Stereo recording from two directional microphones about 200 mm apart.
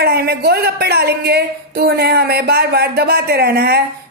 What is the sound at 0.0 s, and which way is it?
Speech, 50° right (ahead or behind).